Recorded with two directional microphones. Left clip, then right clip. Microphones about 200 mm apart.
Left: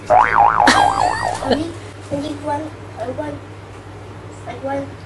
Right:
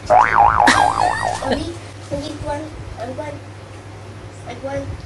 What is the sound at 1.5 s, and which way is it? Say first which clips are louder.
Speech: left 3 dB; 15° left (ahead or behind).